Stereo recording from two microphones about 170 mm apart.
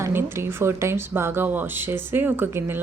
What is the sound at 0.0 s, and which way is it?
Speech, 15° right (ahead or behind).